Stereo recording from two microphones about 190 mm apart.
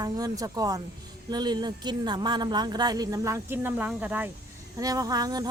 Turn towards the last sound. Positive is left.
turn(degrees=-20)  # may be behind; listen again after turning